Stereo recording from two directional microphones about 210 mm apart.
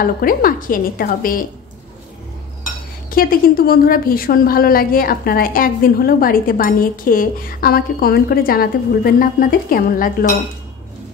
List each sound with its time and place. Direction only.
0.0 s a woman's voice: 45° left (ahead or behind)
3.1 s a woman's voice: 45° left (ahead or behind)